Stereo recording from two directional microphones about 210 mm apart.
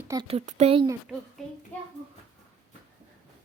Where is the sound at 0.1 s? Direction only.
25° right (ahead or behind).